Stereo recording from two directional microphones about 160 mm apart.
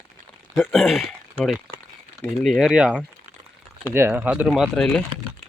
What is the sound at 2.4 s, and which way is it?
Speech, centre (ahead or behind).